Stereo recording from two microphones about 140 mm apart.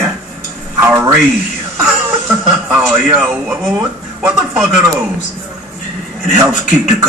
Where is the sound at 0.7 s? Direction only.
15° right (ahead or behind).